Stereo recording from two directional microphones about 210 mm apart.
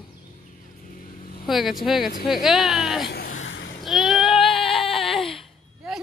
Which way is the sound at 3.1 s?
45° left (ahead or behind).